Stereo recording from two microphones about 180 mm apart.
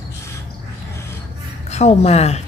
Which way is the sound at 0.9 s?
15° left (ahead or behind).